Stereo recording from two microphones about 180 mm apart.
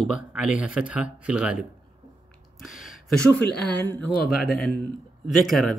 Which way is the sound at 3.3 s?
65° left (ahead or behind).